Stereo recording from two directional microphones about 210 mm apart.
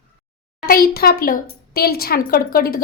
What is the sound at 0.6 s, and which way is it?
A woman's voice, 45° left (ahead or behind).